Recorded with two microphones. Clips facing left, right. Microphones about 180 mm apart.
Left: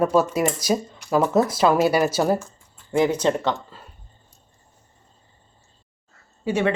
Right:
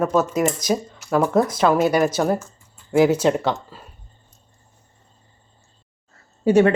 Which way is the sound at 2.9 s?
5° right (ahead or behind).